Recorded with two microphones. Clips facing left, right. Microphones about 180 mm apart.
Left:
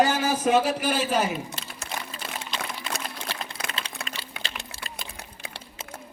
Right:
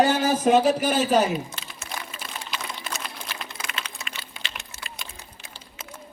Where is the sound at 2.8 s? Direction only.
30° left (ahead or behind).